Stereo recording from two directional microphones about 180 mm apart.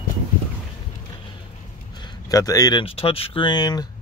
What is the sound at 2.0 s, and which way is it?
Speech, 20° left (ahead or behind).